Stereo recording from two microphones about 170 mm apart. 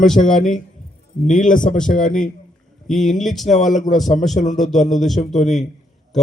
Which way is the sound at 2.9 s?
Centre (ahead or behind).